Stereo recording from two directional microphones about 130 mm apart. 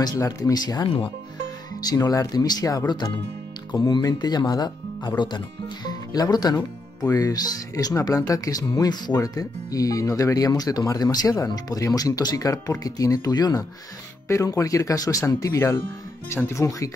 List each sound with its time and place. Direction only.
0.0 s speech: 30° left (ahead or behind)
0.8 s speech: 45° left (ahead or behind)
1.8 s speech: 30° left (ahead or behind)